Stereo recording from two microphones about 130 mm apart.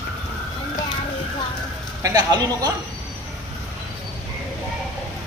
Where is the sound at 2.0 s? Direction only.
30° right (ahead or behind).